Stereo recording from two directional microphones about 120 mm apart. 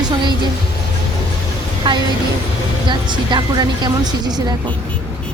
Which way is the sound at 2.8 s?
40° right (ahead or behind).